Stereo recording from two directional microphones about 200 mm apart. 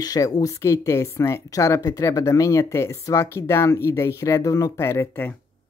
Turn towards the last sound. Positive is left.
turn(degrees=10)  # may be behind; listen again after turning